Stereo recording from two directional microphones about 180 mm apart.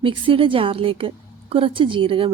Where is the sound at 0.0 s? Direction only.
30° right (ahead or behind).